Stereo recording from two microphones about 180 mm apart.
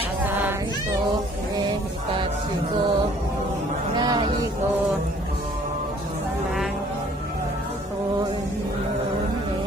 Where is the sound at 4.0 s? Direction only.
25° right (ahead or behind).